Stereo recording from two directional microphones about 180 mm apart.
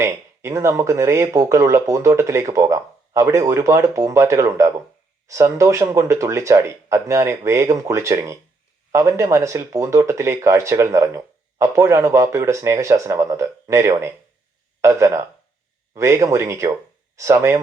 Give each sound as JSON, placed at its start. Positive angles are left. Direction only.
{"t": 0.0, "sound": "speech", "side_deg": -15}